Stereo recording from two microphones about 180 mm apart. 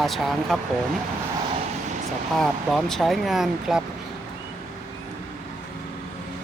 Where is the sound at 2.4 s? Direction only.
Centre (ahead or behind).